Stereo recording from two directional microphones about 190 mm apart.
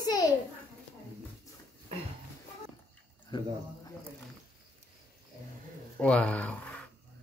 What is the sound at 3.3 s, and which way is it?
Speech, 25° left (ahead or behind).